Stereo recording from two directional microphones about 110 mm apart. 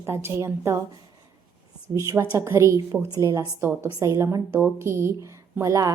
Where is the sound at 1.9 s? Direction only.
25° right (ahead or behind).